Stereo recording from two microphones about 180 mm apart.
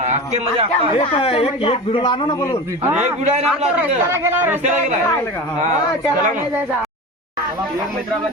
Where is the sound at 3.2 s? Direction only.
35° right (ahead or behind).